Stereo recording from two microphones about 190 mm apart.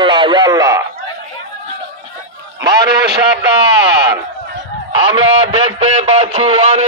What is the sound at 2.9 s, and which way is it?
Speech, 60° right (ahead or behind).